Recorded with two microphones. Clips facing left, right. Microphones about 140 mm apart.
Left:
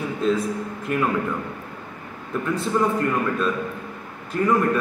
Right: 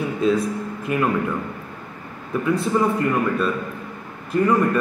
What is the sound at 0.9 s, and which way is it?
Speech, 5° right (ahead or behind).